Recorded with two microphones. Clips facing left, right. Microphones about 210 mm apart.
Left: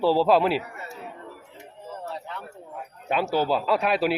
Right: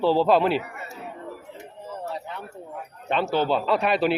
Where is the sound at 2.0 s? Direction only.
15° right (ahead or behind).